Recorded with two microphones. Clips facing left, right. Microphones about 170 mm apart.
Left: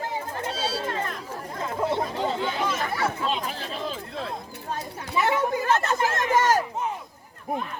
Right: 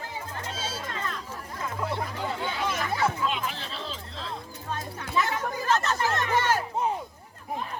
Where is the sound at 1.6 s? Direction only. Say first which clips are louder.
Left 5 dB; 25° left (ahead or behind).